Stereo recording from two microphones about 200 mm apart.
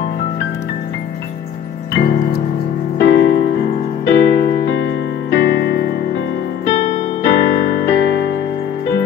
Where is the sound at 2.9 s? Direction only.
60° left (ahead or behind).